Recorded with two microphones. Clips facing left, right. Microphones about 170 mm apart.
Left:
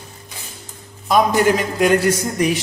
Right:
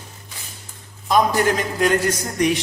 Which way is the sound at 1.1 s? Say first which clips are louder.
Left 3 dB; 10° left (ahead or behind).